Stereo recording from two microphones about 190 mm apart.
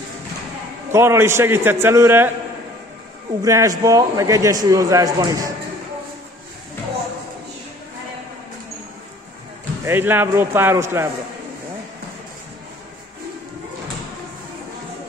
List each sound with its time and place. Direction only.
0.9 s a man's voice: 15° right (ahead or behind)
3.4 s a man's voice: 15° right (ahead or behind)
9.8 s a man's voice: 10° right (ahead or behind)